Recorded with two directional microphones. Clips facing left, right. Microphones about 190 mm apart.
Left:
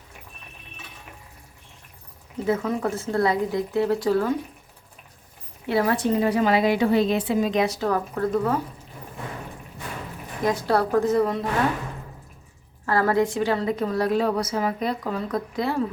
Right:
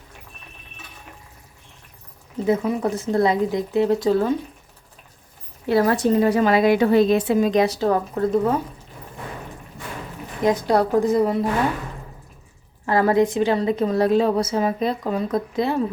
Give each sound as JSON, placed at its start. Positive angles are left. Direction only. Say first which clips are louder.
{"t": 2.5, "sound": "a woman's voice", "louder": "right 3 dB", "side_deg": -15}
{"t": 5.6, "sound": "a woman's voice", "louder": "right 4 dB", "side_deg": -40}
{"t": 10.4, "sound": "a woman's voice", "louder": "right 4 dB", "side_deg": -20}
{"t": 12.8, "sound": "a woman's voice", "louder": "right 3 dB", "side_deg": -20}